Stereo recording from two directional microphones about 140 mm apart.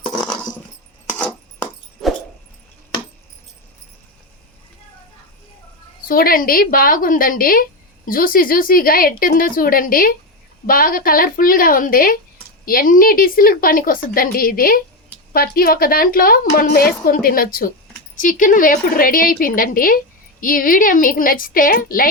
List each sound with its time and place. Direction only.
2.0 s dog: centre (ahead or behind)
6.1 s a woman's voice: 90° left
18.2 s a woman's voice: 70° left (ahead or behind); by 22.0 s 90° left